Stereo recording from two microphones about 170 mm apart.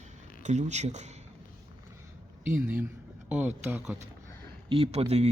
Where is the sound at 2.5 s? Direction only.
10° right (ahead or behind).